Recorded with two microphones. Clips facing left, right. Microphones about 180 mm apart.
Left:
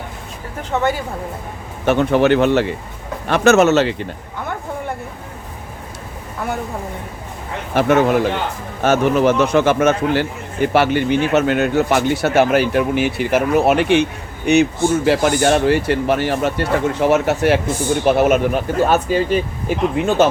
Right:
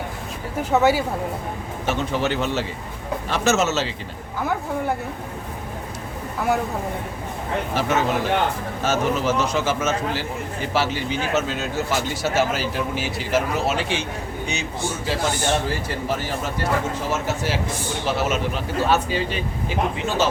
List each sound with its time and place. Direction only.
0.7 s speech: 5° right (ahead or behind)
1.8 s speech: 60° left (ahead or behind)
7.8 s speech: 60° left (ahead or behind)